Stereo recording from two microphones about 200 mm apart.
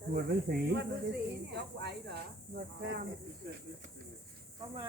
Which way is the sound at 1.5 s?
55° right (ahead or behind).